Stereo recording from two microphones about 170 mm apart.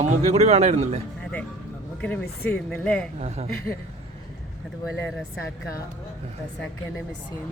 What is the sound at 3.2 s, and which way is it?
Speech, 40° right (ahead or behind).